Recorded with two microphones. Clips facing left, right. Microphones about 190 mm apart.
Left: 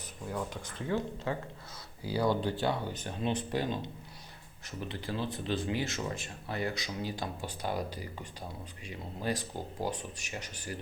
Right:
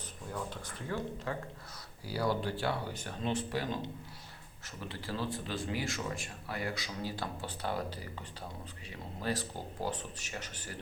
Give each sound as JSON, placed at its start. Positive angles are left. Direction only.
{"t": 0.9, "sound": "speech", "side_deg": 25}
{"t": 4.8, "sound": "speech", "side_deg": 20}